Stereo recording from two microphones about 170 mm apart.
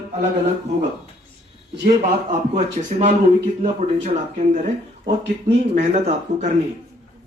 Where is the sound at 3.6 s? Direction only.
45° right (ahead or behind).